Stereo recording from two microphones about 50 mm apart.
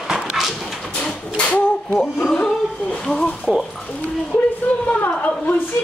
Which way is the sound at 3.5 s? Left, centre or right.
Right.